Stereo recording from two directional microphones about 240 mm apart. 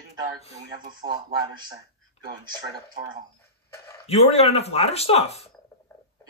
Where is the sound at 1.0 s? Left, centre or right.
Right.